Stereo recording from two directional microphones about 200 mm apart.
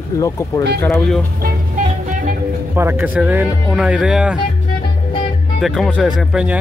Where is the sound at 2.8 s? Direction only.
10° right (ahead or behind).